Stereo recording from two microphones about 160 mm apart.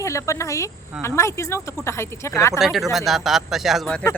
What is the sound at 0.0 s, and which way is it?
Speech, 20° left (ahead or behind).